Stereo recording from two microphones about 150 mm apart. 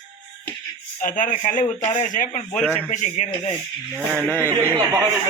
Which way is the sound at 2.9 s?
50° left (ahead or behind).